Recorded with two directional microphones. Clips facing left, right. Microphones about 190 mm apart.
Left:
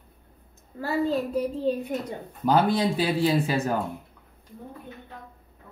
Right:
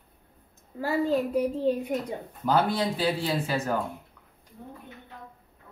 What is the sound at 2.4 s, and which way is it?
Speech, 15° left (ahead or behind).